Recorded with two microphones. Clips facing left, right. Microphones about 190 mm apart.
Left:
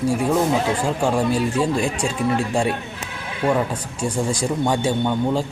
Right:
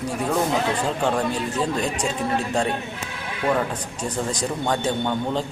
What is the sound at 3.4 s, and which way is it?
Speech, 25° left (ahead or behind).